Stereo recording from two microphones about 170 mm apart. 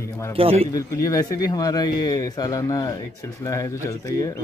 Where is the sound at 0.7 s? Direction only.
20° left (ahead or behind).